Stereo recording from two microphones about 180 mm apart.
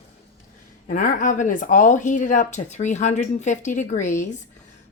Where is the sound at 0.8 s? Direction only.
45° left (ahead or behind).